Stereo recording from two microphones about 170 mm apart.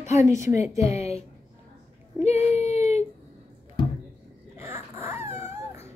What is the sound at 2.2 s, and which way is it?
Child singing, 40° left (ahead or behind).